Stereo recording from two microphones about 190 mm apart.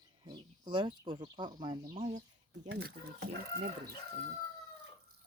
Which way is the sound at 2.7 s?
60° right (ahead or behind).